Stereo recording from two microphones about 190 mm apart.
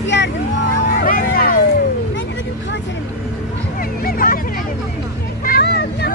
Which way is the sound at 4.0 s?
50° left (ahead or behind).